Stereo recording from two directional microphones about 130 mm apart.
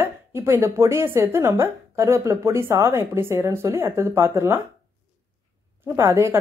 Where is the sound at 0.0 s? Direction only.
20° right (ahead or behind).